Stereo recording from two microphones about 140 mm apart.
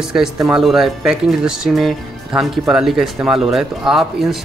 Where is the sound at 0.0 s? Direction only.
5° right (ahead or behind).